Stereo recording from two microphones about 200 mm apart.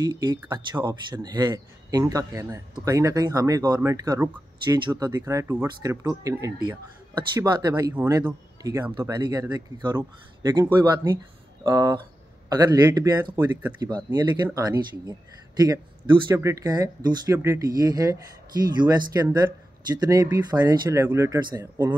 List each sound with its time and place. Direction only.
0.0 s speech: 20° right (ahead or behind)
7.9 s speech: 10° right (ahead or behind)
13.7 s speech: 20° right (ahead or behind)